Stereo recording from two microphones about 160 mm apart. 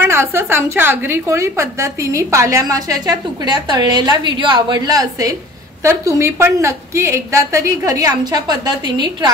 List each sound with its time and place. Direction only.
0.0 s a woman's voice: 15° right (ahead or behind)